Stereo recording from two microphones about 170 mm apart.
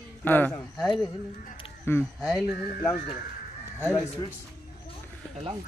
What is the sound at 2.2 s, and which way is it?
Speech, centre (ahead or behind).